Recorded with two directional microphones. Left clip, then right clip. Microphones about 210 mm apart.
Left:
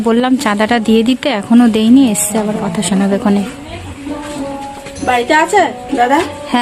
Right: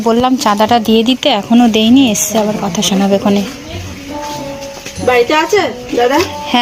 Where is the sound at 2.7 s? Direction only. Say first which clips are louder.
Right 3 dB; 35° left (ahead or behind).